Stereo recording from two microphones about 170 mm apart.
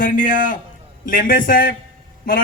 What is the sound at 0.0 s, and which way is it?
A man's voice, 50° left (ahead or behind).